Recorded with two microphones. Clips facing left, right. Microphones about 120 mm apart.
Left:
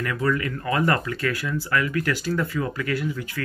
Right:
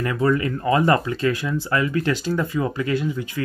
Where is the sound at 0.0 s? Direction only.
25° right (ahead or behind).